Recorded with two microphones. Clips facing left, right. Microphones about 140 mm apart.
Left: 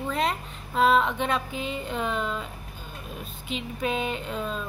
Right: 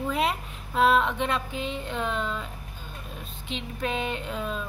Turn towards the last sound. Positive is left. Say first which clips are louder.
# even
turn(degrees=0)  # may be behind; listen again after turning